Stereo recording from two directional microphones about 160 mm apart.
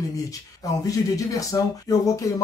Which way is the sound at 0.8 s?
20° left (ahead or behind).